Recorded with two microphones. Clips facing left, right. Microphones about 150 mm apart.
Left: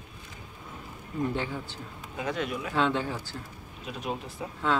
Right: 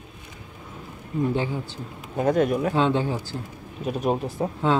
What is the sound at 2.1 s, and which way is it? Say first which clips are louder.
Speech: right 11 dB; 45° right (ahead or behind).